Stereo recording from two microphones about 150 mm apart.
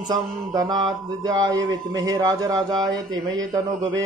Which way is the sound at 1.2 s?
25° right (ahead or behind).